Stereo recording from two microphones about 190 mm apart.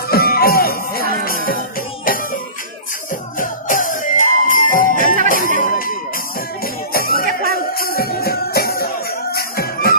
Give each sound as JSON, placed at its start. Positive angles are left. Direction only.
{"t": 0.1, "sound": "music", "side_deg": 50}
{"t": 5.0, "sound": "jingle bell", "side_deg": -45}
{"t": 5.6, "sound": "music", "side_deg": 50}